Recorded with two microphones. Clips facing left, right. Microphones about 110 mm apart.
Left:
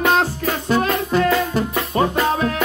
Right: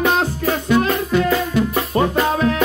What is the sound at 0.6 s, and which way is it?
Music, 40° left (ahead or behind).